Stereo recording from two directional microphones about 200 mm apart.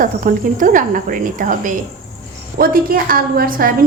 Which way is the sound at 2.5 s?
45° right (ahead or behind).